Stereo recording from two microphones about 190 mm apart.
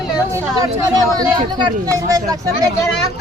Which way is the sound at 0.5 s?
20° right (ahead or behind).